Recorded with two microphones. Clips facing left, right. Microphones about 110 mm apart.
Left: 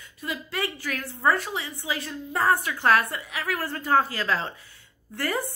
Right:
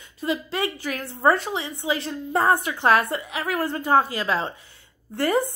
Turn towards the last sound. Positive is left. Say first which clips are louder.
# right 7 dB
turn(degrees=-20)  # may be behind; listen again after turning